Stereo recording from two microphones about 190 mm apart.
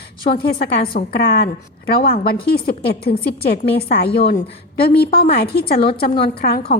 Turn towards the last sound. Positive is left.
turn(degrees=55)  # may be behind; listen again after turning